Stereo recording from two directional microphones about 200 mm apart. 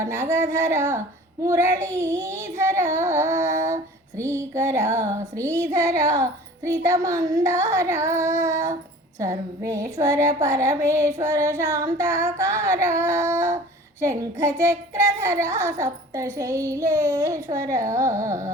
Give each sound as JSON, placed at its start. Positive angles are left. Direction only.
{"t": 0.0, "sound": "a child's voice", "side_deg": -15}